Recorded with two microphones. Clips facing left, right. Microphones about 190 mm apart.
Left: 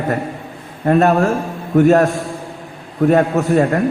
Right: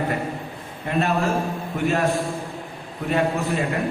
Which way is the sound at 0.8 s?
50° left (ahead or behind).